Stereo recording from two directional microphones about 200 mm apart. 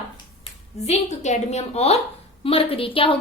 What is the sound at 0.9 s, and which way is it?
A woman's voice, 35° left (ahead or behind).